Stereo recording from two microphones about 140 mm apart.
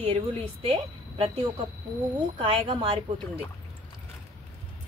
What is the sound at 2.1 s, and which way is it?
Speech, 35° right (ahead or behind).